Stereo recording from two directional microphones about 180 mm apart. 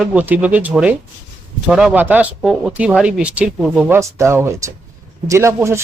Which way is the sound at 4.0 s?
15° right (ahead or behind).